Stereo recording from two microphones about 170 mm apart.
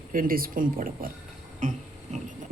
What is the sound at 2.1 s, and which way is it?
Vehicle, 45° right (ahead or behind).